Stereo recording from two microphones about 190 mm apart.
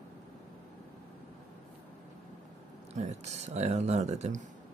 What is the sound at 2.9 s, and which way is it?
Speech, 35° right (ahead or behind).